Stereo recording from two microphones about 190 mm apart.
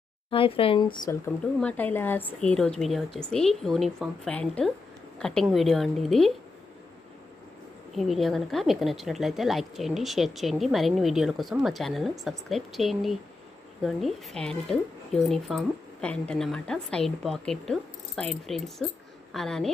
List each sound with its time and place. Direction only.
0.3 s speech: 30° left (ahead or behind)
1.5 s a woman's voice: 10° left (ahead or behind)
7.9 s a woman's voice: centre (ahead or behind)